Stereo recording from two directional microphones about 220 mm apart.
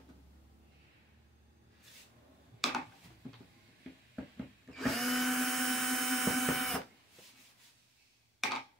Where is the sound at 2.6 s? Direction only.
Centre (ahead or behind).